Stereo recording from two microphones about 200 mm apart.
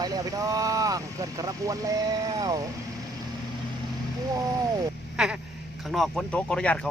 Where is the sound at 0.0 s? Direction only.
20° right (ahead or behind).